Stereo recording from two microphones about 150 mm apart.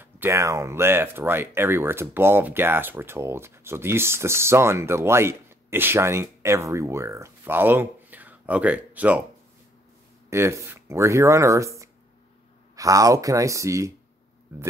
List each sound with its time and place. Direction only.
0.0 s speech: 15° right (ahead or behind)
10.3 s speech: 20° right (ahead or behind)